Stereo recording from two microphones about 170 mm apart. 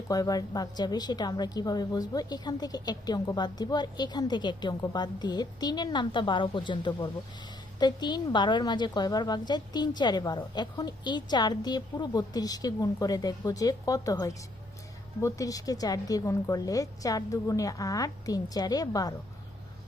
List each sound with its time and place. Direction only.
0.1 s a woman's voice: 20° left (ahead or behind)